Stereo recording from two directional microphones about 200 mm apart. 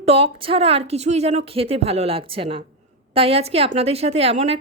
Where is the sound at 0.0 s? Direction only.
30° right (ahead or behind).